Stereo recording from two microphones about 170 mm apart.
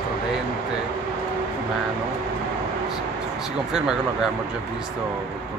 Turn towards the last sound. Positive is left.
turn(degrees=-5)  # may be behind; listen again after turning